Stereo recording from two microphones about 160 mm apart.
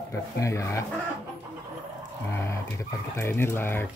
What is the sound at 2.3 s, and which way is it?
Speech, 15° left (ahead or behind).